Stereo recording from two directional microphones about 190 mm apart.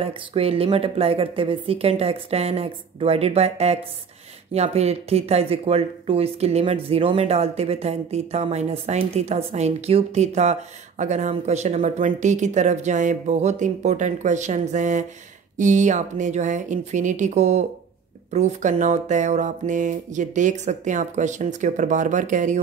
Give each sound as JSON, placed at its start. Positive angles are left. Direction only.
{"t": 0.0, "sound": "speech", "side_deg": -30}